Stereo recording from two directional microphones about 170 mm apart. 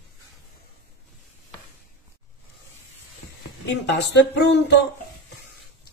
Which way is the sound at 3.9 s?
90° left.